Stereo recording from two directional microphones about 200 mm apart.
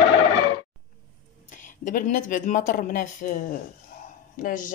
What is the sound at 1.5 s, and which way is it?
Speech, 40° left (ahead or behind).